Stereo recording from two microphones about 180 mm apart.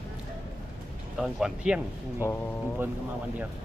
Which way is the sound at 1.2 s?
5° right (ahead or behind).